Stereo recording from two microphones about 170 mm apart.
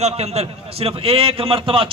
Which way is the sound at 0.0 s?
40° right (ahead or behind).